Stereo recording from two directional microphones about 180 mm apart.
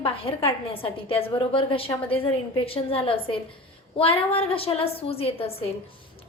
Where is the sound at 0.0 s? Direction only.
30° left (ahead or behind).